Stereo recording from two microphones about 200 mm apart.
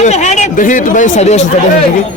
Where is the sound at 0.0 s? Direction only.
35° left (ahead or behind).